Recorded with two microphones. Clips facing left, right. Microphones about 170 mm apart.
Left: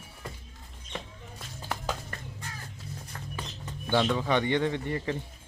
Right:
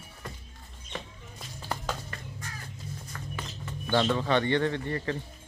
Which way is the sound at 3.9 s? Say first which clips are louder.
Even; 5° left (ahead or behind).